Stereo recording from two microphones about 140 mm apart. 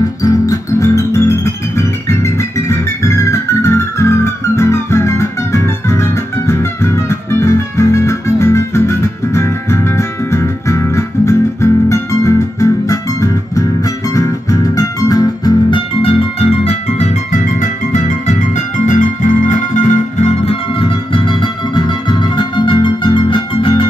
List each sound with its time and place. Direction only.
0.2 s music: 25° left (ahead or behind)
16.0 s music: 40° left (ahead or behind)
20.7 s music: 40° left (ahead or behind)